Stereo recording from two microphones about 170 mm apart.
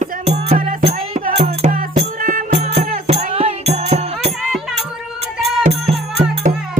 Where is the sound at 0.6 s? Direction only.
55° right (ahead or behind).